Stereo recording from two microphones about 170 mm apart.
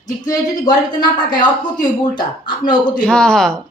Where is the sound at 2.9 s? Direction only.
5° left (ahead or behind).